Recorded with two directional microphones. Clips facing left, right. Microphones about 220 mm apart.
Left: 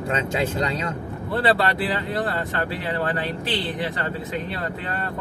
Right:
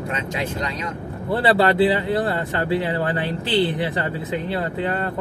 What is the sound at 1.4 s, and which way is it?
Speech, 25° right (ahead or behind).